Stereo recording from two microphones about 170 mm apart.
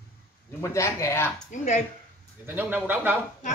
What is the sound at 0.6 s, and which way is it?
Speech, 15° left (ahead or behind).